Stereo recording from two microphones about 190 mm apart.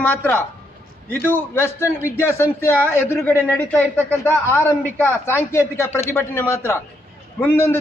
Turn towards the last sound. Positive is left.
turn(degrees=10)  # may be behind; listen again after turning